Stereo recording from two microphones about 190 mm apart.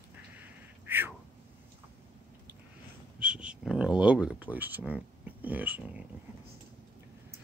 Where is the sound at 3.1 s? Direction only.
5° right (ahead or behind).